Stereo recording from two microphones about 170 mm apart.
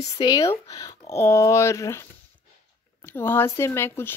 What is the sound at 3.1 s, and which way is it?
Speech, 15° left (ahead or behind).